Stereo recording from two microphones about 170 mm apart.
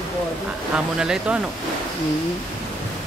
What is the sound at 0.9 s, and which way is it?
Speech, 5° right (ahead or behind).